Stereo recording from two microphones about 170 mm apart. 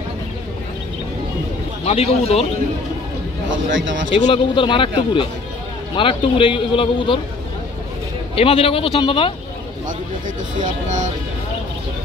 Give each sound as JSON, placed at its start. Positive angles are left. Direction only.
{"t": 1.9, "sound": "a man's voice", "side_deg": 35}
{"t": 3.4, "sound": "speech", "side_deg": -90}
{"t": 4.1, "sound": "a man's voice", "side_deg": 30}
{"t": 5.9, "sound": "a man's voice", "side_deg": 30}
{"t": 8.4, "sound": "a man's voice", "side_deg": 35}
{"t": 10.6, "sound": "speech", "side_deg": -45}